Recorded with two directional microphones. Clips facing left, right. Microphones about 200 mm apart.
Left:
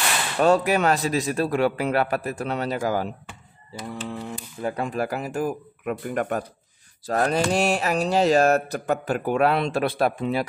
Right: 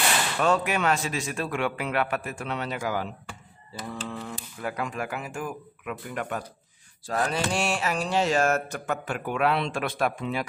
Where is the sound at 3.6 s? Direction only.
15° left (ahead or behind).